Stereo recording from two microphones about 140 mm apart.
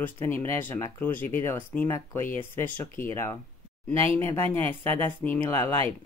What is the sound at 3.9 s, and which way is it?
Speech, 45° right (ahead or behind).